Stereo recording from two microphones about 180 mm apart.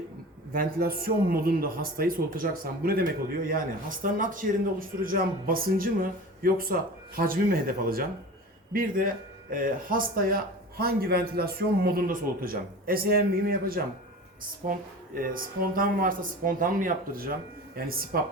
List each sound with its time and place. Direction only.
0.5 s a man's voice: 55° right (ahead or behind)